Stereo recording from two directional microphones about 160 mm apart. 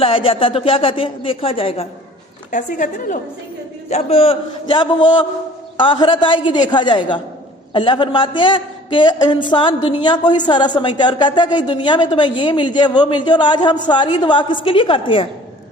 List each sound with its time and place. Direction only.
0.0 s speech: 35° left (ahead or behind)
2.5 s a woman's voice: 50° left (ahead or behind)
3.8 s a man's voice: 40° left (ahead or behind)